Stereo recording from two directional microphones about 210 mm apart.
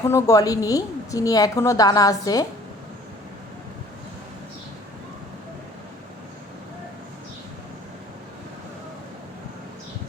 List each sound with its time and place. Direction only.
0.0 s a woman's voice: 10° left (ahead or behind)